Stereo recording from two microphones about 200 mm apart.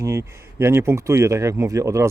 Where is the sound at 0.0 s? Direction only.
15° right (ahead or behind).